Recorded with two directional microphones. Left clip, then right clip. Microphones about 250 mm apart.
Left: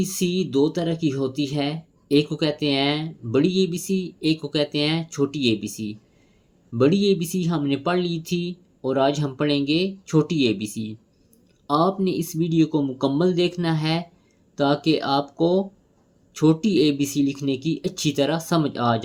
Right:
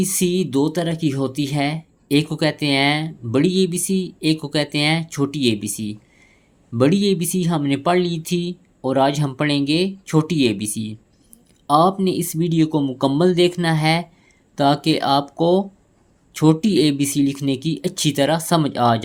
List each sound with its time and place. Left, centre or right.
0.0 s speech: right